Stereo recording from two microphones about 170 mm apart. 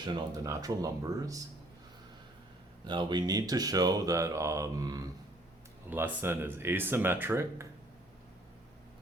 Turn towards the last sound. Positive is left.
turn(degrees=-15)  # may be behind; listen again after turning